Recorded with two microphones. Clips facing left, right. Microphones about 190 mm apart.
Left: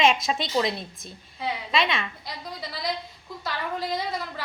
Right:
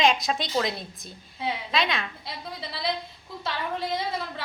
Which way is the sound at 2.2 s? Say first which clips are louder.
Even; 25° right (ahead or behind).